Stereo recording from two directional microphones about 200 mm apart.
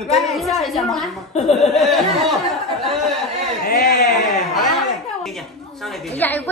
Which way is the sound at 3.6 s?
45° left (ahead or behind).